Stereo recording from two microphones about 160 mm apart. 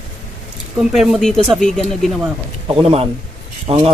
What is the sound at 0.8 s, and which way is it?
Speech, centre (ahead or behind).